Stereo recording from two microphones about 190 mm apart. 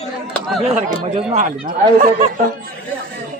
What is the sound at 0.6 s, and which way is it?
Speech, 35° right (ahead or behind).